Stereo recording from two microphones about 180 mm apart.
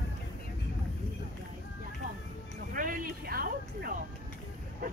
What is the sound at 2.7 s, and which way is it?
Music, 50° right (ahead or behind).